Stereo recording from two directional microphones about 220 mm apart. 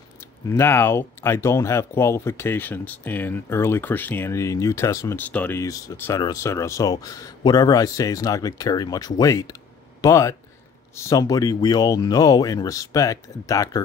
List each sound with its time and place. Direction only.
0.5 s speech: 10° left (ahead or behind)